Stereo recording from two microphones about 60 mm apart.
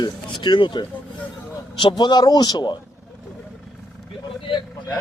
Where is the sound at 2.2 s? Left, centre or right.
Left.